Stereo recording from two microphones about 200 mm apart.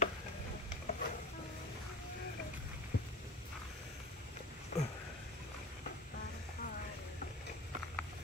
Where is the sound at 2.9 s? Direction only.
50° left (ahead or behind).